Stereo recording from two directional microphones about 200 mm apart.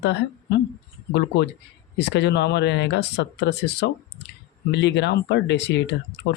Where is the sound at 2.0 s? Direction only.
60° left (ahead or behind).